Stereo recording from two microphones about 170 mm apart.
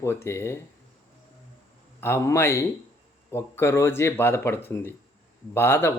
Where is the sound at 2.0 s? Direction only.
15° left (ahead or behind).